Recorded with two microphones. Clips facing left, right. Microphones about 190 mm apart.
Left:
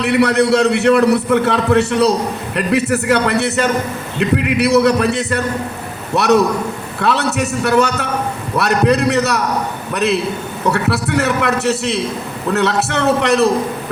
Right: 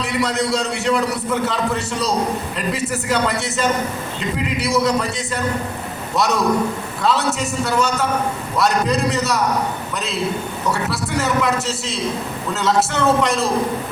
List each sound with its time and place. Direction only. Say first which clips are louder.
0.0 s a man's voice: left 7 dB; 65° left (ahead or behind)